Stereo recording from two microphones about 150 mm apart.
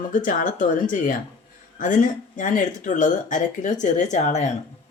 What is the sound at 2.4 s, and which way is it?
A woman's voice, 55° left (ahead or behind).